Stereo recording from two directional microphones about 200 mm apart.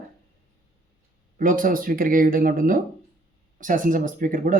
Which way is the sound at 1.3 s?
45° right (ahead or behind).